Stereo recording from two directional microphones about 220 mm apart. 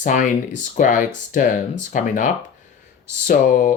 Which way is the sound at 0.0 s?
35° left (ahead or behind).